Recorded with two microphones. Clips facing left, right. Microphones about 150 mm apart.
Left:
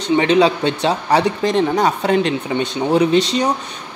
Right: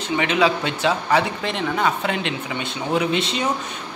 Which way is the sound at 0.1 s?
30° left (ahead or behind).